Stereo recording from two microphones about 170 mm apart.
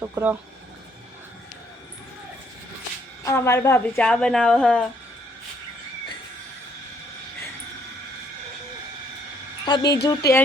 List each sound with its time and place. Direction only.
0.0 s speech: 10° right (ahead or behind)
3.2 s speech: 15° left (ahead or behind)
9.6 s a woman's voice: 25° left (ahead or behind)